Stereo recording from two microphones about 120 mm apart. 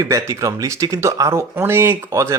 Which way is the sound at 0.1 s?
25° right (ahead or behind).